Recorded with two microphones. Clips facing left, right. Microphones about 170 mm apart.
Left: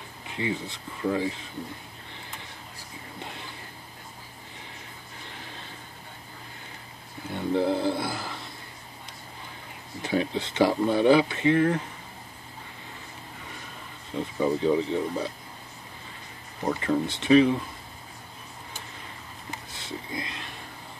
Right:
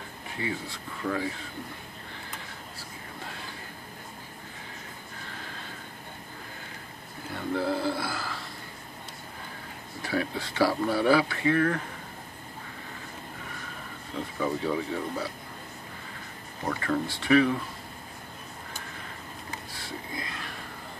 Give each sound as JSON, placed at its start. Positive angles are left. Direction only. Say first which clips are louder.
{"t": 0.3, "sound": "speech", "louder": "left 3 dB", "side_deg": 20}
{"t": 7.3, "sound": "speech", "louder": "left 4 dB", "side_deg": 20}
{"t": 10.0, "sound": "speech", "louder": "left 3 dB", "side_deg": 20}
{"t": 14.4, "sound": "speech", "louder": "left 5 dB", "side_deg": 20}
{"t": 16.6, "sound": "speech", "louder": "left 3 dB", "side_deg": 20}
{"t": 19.7, "sound": "a sound", "louder": "left 4 dB", "side_deg": 20}